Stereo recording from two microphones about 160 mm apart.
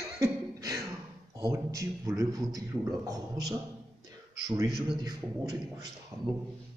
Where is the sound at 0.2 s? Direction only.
20° right (ahead or behind).